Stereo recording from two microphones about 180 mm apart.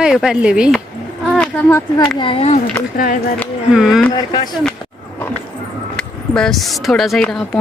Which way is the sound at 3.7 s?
5° right (ahead or behind).